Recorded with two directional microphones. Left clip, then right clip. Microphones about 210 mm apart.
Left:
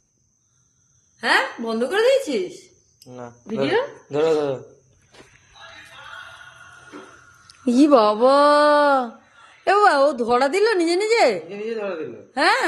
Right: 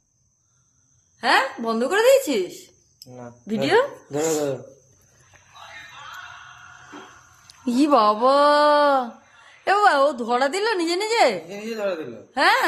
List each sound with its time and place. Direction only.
1.2 s a woman's voice: 30° right (ahead or behind)
2.6 s a sound: 5° left (ahead or behind)
3.6 s speech: 60° right (ahead or behind)
7.6 s a woman's voice: 10° left (ahead or behind)
11.4 s a woman's voice: 35° right (ahead or behind)
12.3 s a woman's voice: 5° left (ahead or behind)